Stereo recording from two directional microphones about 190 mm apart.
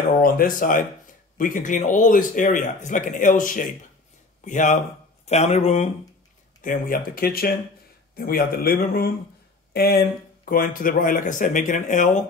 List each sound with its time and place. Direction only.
0.2 s speech: 45° left (ahead or behind)
6.6 s speech: 45° left (ahead or behind)